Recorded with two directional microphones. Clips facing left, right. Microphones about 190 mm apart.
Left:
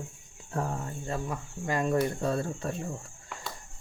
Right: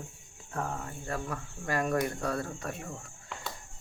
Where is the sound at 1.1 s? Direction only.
20° left (ahead or behind).